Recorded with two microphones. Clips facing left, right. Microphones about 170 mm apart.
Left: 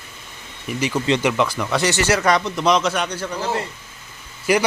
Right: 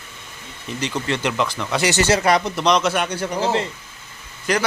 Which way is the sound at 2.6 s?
Centre (ahead or behind).